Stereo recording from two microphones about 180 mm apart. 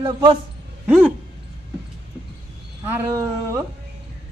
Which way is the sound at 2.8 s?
15° right (ahead or behind).